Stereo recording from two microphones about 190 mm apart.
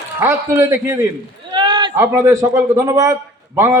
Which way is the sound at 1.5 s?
25° right (ahead or behind).